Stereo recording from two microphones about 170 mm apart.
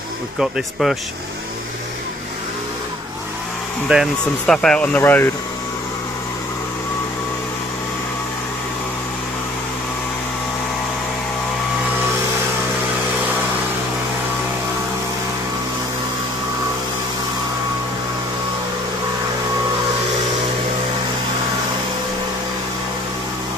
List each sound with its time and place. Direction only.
0.4 s speech: centre (ahead or behind)
3.9 s speech: centre (ahead or behind)